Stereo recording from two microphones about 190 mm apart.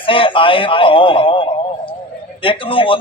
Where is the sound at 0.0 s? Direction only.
25° left (ahead or behind).